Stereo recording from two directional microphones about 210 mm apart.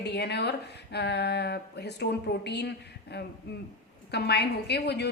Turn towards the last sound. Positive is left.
turn(degrees=50)  # may be behind; listen again after turning